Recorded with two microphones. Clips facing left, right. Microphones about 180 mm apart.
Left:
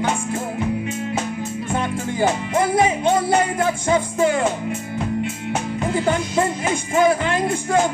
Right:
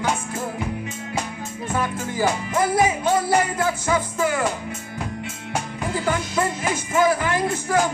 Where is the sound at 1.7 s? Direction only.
25° left (ahead or behind).